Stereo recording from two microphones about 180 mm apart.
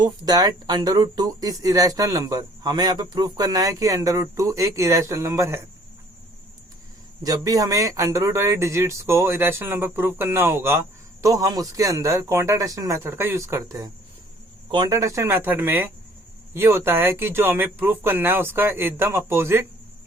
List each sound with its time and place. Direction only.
0.0 s speech: 20° right (ahead or behind)
7.2 s speech: 20° right (ahead or behind)